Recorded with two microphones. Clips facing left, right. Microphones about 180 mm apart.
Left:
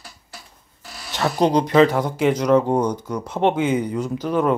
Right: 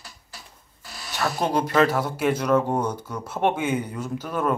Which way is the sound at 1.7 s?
20° left (ahead or behind).